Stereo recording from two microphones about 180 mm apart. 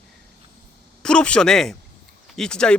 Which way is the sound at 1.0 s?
5° left (ahead or behind).